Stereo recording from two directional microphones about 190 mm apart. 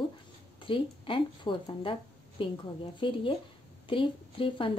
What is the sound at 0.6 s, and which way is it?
Speech, 30° left (ahead or behind).